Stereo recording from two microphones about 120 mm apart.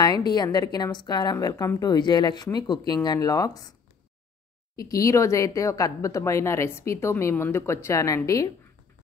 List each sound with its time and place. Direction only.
0.0 s speech: 35° left (ahead or behind)
4.7 s speech: 30° left (ahead or behind)